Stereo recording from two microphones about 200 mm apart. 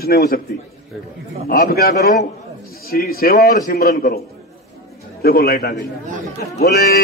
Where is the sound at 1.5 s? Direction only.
50° left (ahead or behind).